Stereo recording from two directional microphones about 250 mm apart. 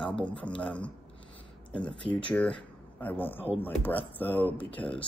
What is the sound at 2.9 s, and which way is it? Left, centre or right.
Speech, centre.